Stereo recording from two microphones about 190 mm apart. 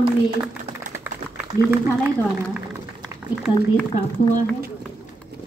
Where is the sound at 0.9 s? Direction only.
10° right (ahead or behind).